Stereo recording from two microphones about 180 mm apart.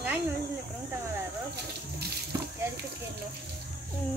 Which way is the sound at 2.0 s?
60° right (ahead or behind).